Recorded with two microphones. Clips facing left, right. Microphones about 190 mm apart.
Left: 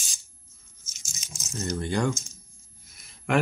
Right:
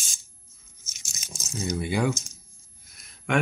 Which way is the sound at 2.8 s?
Centre (ahead or behind).